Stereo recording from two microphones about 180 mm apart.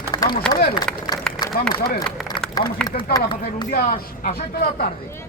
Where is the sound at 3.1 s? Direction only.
25° left (ahead or behind).